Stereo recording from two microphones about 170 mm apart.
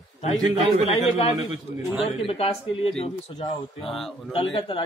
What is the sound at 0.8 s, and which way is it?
Speech, 35° left (ahead or behind).